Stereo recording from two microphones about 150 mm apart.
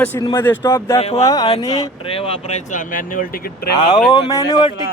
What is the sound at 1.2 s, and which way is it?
Speech, 25° left (ahead or behind).